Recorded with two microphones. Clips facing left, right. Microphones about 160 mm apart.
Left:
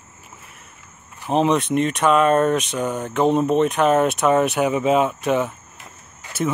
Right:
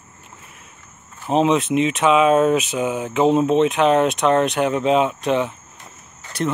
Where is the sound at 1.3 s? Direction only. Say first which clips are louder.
Right 1 dB; centre (ahead or behind).